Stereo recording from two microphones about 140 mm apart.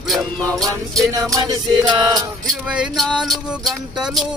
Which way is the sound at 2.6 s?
5° right (ahead or behind).